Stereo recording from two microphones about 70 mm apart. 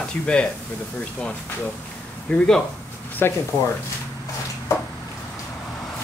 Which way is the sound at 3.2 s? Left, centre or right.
Left.